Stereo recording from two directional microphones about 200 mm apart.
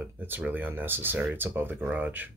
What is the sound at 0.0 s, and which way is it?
Speech, 10° right (ahead or behind).